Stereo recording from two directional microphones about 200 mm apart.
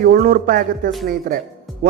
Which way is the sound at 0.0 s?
45° right (ahead or behind).